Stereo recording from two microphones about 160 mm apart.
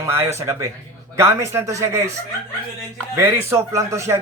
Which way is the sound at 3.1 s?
15° right (ahead or behind).